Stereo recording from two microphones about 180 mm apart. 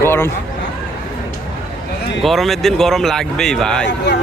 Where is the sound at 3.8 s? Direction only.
70° left (ahead or behind).